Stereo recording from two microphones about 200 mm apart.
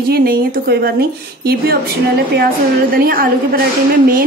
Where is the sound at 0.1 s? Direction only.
50° right (ahead or behind).